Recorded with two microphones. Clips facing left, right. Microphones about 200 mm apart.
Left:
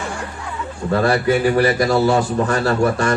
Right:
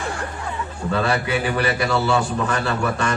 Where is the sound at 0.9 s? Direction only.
40° left (ahead or behind).